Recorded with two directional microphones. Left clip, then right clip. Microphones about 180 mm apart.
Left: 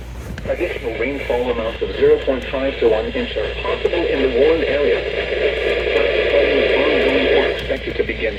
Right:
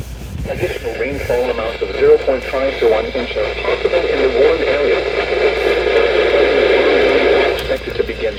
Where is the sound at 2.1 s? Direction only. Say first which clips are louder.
Right 5 dB; 40° right (ahead or behind).